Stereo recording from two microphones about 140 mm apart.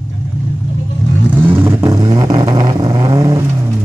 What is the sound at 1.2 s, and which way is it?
Vehicle, 10° right (ahead or behind).